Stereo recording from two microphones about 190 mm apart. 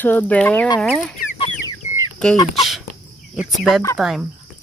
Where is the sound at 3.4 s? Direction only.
Centre (ahead or behind).